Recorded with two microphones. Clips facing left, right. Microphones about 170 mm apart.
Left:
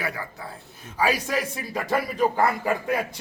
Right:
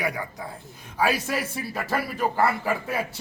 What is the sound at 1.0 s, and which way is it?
Speech, 10° left (ahead or behind).